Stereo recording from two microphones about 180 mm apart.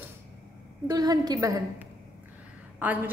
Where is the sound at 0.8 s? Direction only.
20° right (ahead or behind).